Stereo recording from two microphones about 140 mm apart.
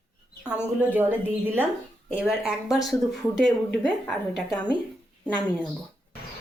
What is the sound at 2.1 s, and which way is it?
Speech, 5° right (ahead or behind).